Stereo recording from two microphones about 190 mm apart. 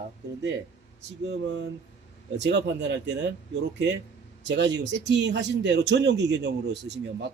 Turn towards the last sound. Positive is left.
turn(degrees=-60)  # may be behind; listen again after turning